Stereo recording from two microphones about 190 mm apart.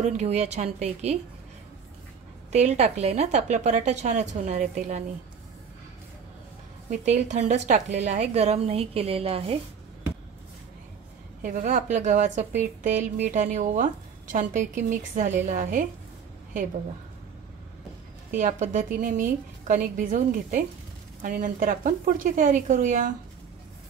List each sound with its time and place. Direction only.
0.0 s speech: 35° right (ahead or behind)
2.5 s speech: 35° right (ahead or behind)
6.9 s speech: 35° right (ahead or behind)
11.4 s speech: 40° right (ahead or behind)
18.4 s a woman's voice: 40° right (ahead or behind)